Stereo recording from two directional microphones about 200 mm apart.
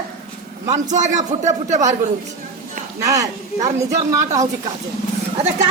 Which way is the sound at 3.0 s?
15° right (ahead or behind).